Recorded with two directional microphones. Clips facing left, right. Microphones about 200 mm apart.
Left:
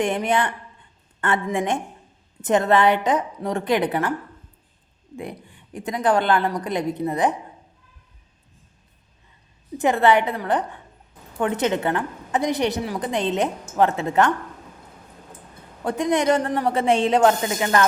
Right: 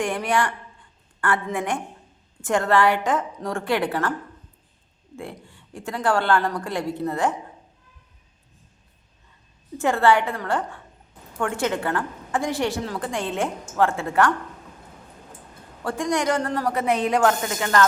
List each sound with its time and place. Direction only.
0.0 s a woman's voice: 20° left (ahead or behind)
5.1 s a woman's voice: 15° left (ahead or behind)
9.7 s a woman's voice: 20° left (ahead or behind)
15.8 s a woman's voice: 20° left (ahead or behind)